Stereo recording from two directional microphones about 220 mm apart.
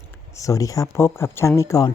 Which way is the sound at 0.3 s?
15° left (ahead or behind).